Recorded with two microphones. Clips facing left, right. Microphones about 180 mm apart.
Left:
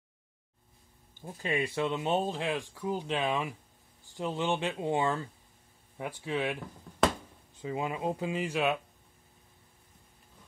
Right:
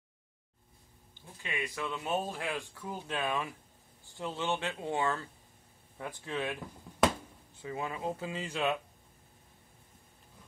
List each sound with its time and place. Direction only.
1.1 s speech: 45° left (ahead or behind)
1.5 s speech: 30° left (ahead or behind); by 8.7 s 10° left (ahead or behind)